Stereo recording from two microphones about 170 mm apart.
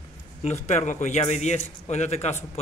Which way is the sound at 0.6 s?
45° left (ahead or behind).